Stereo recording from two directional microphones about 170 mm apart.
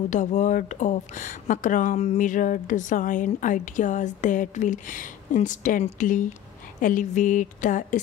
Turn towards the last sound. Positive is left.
turn(degrees=50)  # may be behind; listen again after turning